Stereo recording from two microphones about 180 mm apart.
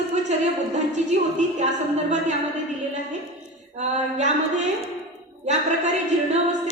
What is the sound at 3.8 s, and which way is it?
Speech, 40° right (ahead or behind).